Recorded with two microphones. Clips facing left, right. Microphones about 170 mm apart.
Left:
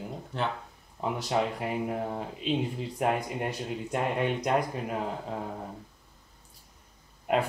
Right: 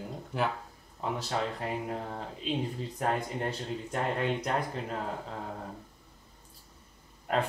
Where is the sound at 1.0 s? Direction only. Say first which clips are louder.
Left 4 dB; 15° left (ahead or behind).